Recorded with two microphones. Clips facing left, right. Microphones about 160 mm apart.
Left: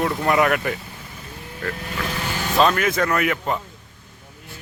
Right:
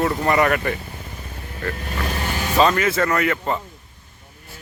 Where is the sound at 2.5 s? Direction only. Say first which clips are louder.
Right 1 dB; centre (ahead or behind).